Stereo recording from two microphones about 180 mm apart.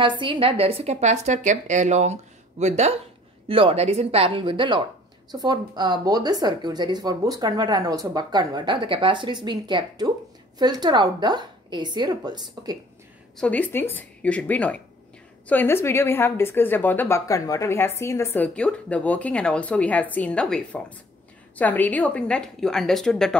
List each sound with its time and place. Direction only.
0.0 s a woman's voice: 30° right (ahead or behind)
13.4 s a woman's voice: 10° left (ahead or behind)